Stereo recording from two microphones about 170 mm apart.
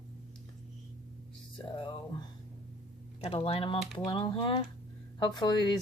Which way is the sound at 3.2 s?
35° left (ahead or behind).